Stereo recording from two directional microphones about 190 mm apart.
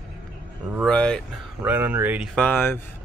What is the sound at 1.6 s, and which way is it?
Speech, 10° right (ahead or behind).